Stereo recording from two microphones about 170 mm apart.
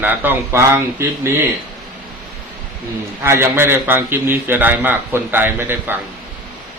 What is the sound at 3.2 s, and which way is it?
A man's voice, 15° right (ahead or behind).